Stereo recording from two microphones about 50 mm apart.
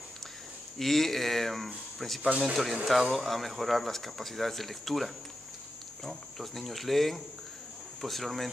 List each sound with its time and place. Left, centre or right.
0.7 s speech: centre
2.2 s speech: right
2.5 s speech: centre